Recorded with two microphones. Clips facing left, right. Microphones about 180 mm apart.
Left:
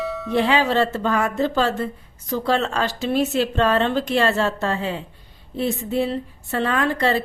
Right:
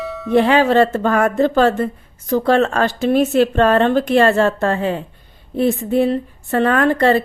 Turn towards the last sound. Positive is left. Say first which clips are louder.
# right 6 dB
turn(degrees=-55)  # may be behind; listen again after turning